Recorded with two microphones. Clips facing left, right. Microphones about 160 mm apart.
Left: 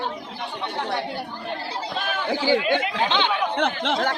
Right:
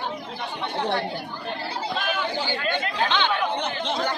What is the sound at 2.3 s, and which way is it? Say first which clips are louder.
A man's voice: left 6 dB; 90° left.